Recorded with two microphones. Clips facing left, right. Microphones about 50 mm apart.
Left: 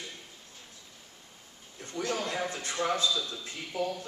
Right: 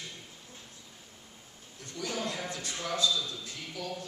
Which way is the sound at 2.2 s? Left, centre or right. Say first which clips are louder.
Left 3 dB; left.